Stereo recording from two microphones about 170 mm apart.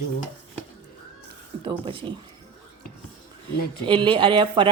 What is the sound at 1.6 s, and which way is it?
Speech, 30° right (ahead or behind).